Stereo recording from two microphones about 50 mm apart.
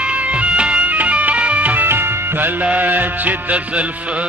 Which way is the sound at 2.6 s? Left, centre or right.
Right.